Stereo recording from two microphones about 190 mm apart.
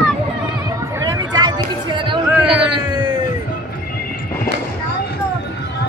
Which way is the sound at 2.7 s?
25° right (ahead or behind).